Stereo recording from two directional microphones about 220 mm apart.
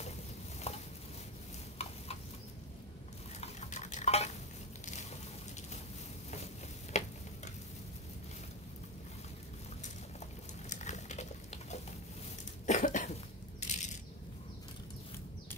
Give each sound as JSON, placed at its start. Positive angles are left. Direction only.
{"t": 0.7, "sound": "a sound", "side_deg": 30}
{"t": 3.3, "sound": "stir", "side_deg": 30}
{"t": 6.9, "sound": "a sound", "side_deg": 30}
{"t": 10.7, "sound": "patter", "side_deg": 30}
{"t": 12.6, "sound": "cough", "side_deg": 35}
{"t": 13.6, "sound": "rattle", "side_deg": 30}